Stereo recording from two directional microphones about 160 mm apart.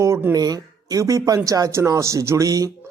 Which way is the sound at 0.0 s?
15° right (ahead or behind).